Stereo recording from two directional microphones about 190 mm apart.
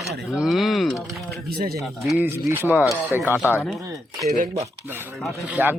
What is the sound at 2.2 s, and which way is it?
Speech, 10° right (ahead or behind).